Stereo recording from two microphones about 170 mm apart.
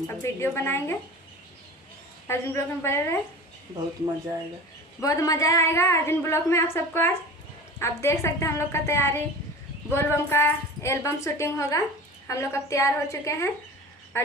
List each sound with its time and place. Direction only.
0.1 s a woman's voice: 15° left (ahead or behind)
2.2 s a woman's voice: 15° left (ahead or behind)
5.0 s a woman's voice: 20° left (ahead or behind)